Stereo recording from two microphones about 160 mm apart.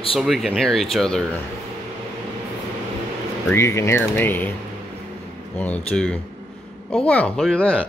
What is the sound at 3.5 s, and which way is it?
Speech, 15° left (ahead or behind).